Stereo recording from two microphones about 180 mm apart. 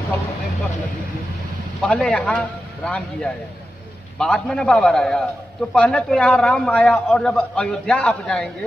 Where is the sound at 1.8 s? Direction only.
5° left (ahead or behind).